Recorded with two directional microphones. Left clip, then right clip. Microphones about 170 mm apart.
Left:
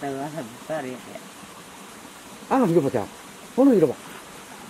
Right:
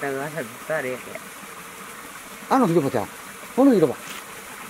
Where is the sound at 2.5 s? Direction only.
25° right (ahead or behind).